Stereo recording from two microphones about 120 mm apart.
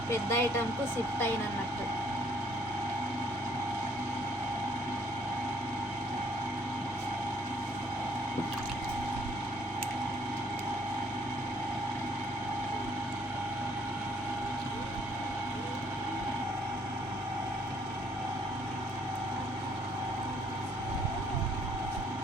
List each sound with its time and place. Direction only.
0.1 s speech: 20° left (ahead or behind)